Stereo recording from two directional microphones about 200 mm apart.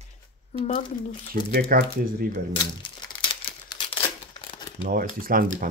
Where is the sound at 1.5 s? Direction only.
50° right (ahead or behind).